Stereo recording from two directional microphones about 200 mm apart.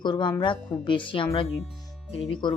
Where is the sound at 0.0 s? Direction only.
20° left (ahead or behind).